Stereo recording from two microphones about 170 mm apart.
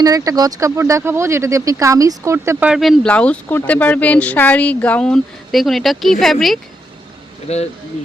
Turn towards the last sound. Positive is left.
turn(degrees=40)  # may be behind; listen again after turning